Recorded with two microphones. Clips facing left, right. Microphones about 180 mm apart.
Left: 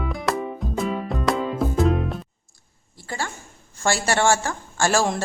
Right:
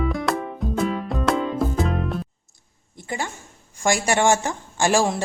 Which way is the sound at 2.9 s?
20° right (ahead or behind).